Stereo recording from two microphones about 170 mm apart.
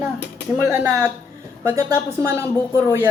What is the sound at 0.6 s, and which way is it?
A woman's voice, 20° right (ahead or behind).